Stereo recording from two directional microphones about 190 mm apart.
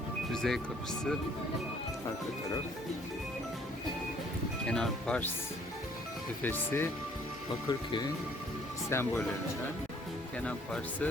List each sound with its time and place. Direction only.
0.3 s speech: centre (ahead or behind)
4.7 s speech: 5° left (ahead or behind)
6.4 s speech: 10° left (ahead or behind)
7.7 s speech: 25° left (ahead or behind)
8.9 s speech: 10° left (ahead or behind)
10.4 s speech: 5° left (ahead or behind)